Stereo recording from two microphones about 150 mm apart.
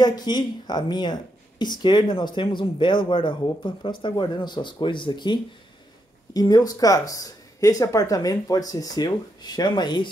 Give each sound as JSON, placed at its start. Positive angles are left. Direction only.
{"t": 0.0, "sound": "speech", "side_deg": 30}